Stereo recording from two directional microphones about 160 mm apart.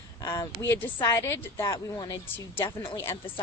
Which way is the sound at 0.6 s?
15° left (ahead or behind).